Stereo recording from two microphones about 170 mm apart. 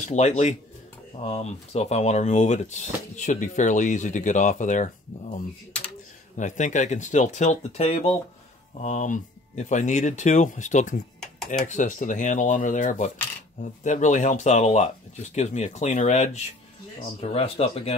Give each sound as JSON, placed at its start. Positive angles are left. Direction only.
{"t": 0.0, "sound": "speech", "side_deg": 45}